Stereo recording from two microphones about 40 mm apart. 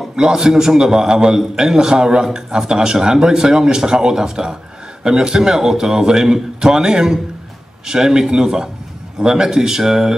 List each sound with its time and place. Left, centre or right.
0.1 s a man's voice: centre